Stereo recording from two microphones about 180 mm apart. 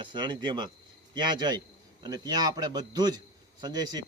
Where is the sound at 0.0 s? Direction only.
25° right (ahead or behind).